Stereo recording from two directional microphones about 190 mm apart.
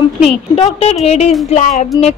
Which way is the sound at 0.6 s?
30° left (ahead or behind).